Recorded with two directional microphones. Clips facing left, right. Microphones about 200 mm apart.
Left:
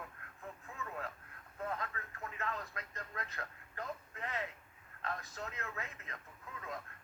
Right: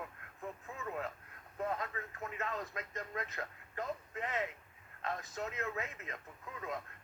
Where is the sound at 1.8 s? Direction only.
20° right (ahead or behind).